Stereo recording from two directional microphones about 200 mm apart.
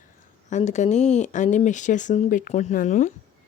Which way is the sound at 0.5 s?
35° left (ahead or behind).